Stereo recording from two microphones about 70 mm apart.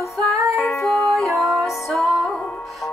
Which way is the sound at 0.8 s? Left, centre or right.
Centre.